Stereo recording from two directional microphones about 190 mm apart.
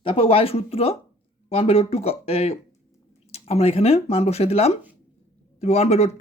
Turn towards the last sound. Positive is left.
turn(degrees=35)  # may be behind; listen again after turning